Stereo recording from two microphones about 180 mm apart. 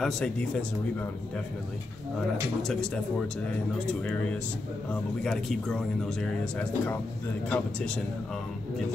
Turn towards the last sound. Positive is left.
turn(degrees=5)  # may be behind; listen again after turning